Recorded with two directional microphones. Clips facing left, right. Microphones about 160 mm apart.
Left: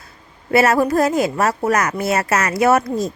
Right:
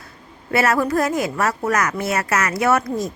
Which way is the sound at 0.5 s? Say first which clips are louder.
Left 4 dB; 25° left (ahead or behind).